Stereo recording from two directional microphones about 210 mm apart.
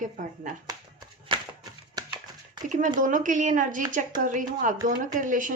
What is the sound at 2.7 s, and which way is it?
A woman's voice, 40° right (ahead or behind).